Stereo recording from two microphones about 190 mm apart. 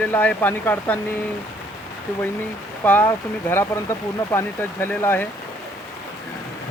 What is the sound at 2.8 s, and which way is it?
Speech, 10° left (ahead or behind).